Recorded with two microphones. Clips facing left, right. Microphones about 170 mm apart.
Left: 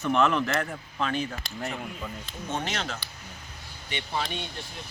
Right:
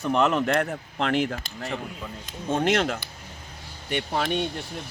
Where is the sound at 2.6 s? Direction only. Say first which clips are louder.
Right 11 dB; 55° right (ahead or behind).